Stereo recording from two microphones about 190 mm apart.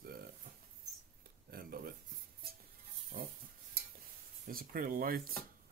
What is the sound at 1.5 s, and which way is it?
Speech, 55° right (ahead or behind).